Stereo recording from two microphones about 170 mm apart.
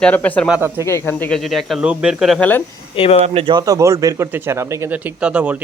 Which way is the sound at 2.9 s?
35° left (ahead or behind).